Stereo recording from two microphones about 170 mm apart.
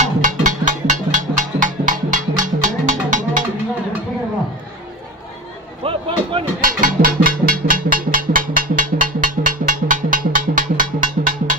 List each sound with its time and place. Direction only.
0.0 s music: 50° right (ahead or behind)
5.8 s a sound: 30° right (ahead or behind)
6.6 s music: 55° right (ahead or behind)